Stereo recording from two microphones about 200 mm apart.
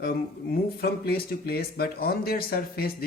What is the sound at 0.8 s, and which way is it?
Speech, 50° left (ahead or behind).